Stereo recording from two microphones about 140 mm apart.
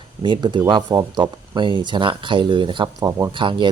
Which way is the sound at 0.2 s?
35° right (ahead or behind).